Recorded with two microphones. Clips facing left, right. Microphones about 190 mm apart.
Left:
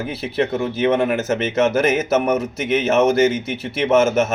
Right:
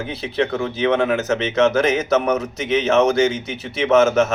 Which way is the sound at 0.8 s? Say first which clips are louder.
Even; 5° left (ahead or behind).